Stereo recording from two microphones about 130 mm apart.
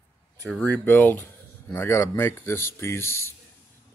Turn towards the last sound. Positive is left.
turn(degrees=20)  # may be behind; listen again after turning